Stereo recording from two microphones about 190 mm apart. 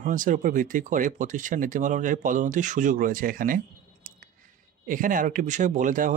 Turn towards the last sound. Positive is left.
turn(degrees=-45)  # may be behind; listen again after turning